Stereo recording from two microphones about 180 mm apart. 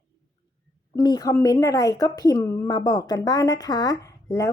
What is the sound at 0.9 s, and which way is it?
A woman's voice, 20° left (ahead or behind).